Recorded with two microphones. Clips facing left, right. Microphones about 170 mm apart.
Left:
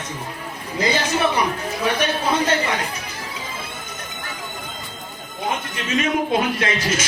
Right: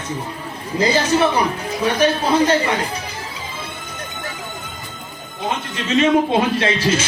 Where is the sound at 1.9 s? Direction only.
30° right (ahead or behind).